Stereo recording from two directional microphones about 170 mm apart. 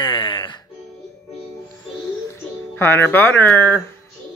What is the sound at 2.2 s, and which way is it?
Speech, 15° left (ahead or behind).